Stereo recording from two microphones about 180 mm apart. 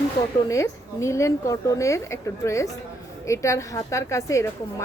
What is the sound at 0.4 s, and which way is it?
A woman's voice, 15° left (ahead or behind).